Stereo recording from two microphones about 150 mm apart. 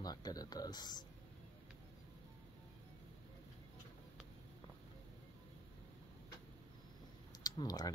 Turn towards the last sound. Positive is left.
turn(degrees=25)  # may be behind; listen again after turning